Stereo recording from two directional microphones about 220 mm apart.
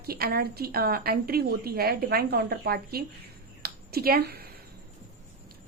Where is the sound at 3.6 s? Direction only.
45° right (ahead or behind).